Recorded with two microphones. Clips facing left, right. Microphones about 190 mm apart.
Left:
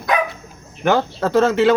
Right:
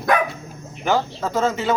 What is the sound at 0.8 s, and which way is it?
Speech, 65° left (ahead or behind).